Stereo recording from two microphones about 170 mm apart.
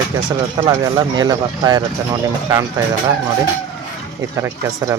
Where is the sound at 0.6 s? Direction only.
25° right (ahead or behind).